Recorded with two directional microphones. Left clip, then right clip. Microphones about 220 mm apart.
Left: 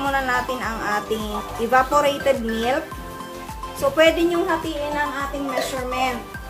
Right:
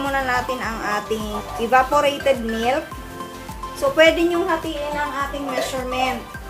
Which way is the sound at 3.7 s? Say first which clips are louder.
Right 2 dB; 5° right (ahead or behind).